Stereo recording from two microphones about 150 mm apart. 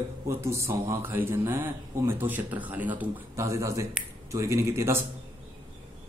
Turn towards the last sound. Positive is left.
turn(degrees=-20)  # may be behind; listen again after turning